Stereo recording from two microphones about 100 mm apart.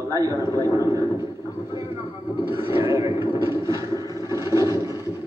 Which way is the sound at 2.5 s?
25° right (ahead or behind).